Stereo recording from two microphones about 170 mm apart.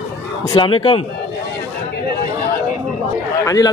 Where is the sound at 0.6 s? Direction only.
30° left (ahead or behind).